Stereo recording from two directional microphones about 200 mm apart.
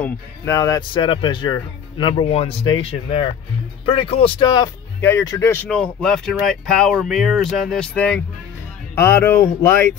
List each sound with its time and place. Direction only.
0.0 s speech: 15° left (ahead or behind)